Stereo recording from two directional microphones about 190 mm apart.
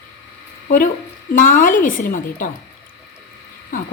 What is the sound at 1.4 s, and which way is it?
Speech, 45° left (ahead or behind).